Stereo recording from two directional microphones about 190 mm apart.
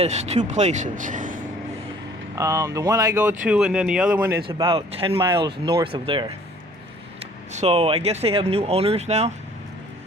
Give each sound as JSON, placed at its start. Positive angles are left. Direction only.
{"t": 0.0, "sound": "speech", "side_deg": -35}
{"t": 2.3, "sound": "speech", "side_deg": -15}
{"t": 4.4, "sound": "speech", "side_deg": -25}
{"t": 7.5, "sound": "speech", "side_deg": -35}